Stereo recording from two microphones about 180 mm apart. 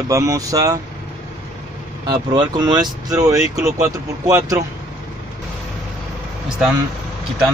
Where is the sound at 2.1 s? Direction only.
25° right (ahead or behind).